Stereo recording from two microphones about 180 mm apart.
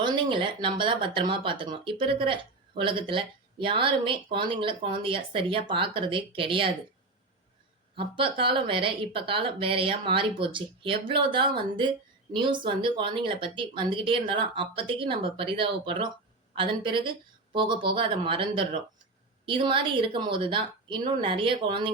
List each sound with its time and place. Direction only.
0.0 s speech: 25° right (ahead or behind)
7.9 s speech: 30° right (ahead or behind)